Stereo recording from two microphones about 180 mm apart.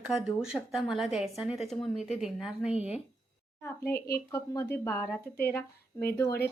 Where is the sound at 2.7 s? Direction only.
35° left (ahead or behind).